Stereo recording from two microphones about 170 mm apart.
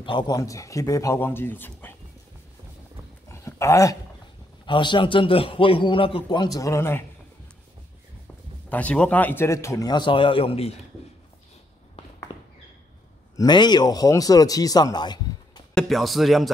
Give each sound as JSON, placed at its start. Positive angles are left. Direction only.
{"t": 0.0, "sound": "a man's voice", "side_deg": 25}
{"t": 3.3, "sound": "dog", "side_deg": 15}
{"t": 4.6, "sound": "a man's voice", "side_deg": 30}
{"t": 8.6, "sound": "a man's voice", "side_deg": 10}
{"t": 12.3, "sound": "a sound", "side_deg": 30}
{"t": 13.4, "sound": "a man's voice", "side_deg": 25}
{"t": 15.7, "sound": "speech", "side_deg": 0}